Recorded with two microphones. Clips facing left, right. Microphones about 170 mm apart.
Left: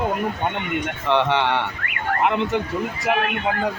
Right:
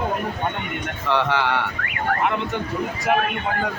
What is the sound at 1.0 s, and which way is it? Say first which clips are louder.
Speech: left 1 dB; 25° left (ahead or behind).